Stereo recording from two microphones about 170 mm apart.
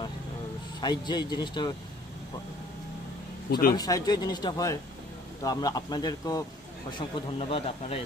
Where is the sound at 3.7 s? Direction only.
20° left (ahead or behind).